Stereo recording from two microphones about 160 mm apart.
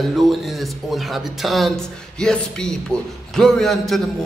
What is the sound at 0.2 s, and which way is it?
A man's voice, centre (ahead or behind).